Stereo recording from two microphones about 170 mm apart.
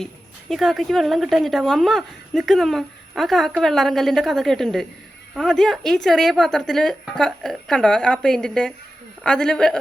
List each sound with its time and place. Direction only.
0.0 s speech: centre (ahead or behind)